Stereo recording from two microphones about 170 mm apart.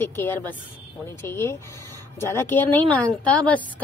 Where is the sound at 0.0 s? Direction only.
10° left (ahead or behind).